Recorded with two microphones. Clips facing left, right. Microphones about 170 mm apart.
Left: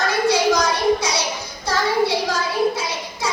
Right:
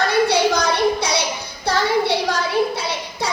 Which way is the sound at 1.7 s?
65° right (ahead or behind).